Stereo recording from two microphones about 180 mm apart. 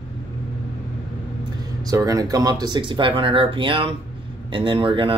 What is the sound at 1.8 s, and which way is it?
Speech, 20° right (ahead or behind).